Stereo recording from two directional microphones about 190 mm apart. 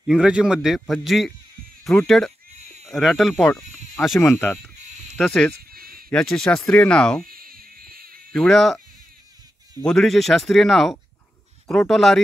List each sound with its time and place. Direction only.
0.0 s a man's voice: 5° right (ahead or behind)
4.2 s speech: 10° left (ahead or behind)
5.7 s a sound: 50° right (ahead or behind)
6.0 s a man's voice: 5° left (ahead or behind)
7.2 s a sound: 50° right (ahead or behind)
8.3 s a man's voice: centre (ahead or behind)